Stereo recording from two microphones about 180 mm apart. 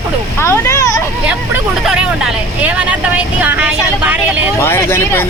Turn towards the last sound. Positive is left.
turn(degrees=15)  # may be behind; listen again after turning